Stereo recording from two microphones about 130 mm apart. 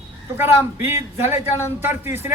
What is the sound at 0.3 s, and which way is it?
A man's voice, 15° right (ahead or behind).